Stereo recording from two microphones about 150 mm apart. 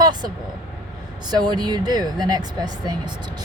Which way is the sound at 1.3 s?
30° right (ahead or behind).